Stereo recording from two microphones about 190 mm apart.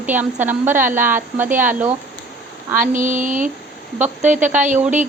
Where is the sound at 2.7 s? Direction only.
45° right (ahead or behind).